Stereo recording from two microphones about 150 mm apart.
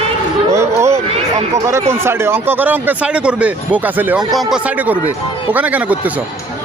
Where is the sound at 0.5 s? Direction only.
20° right (ahead or behind).